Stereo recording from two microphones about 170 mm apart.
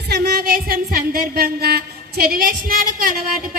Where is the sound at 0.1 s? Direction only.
65° right (ahead or behind).